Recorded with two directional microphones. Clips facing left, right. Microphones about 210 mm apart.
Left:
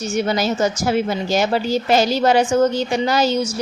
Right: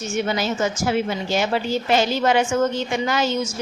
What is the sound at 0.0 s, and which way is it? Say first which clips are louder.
A woman's voice: left 3 dB; 40° left (ahead or behind).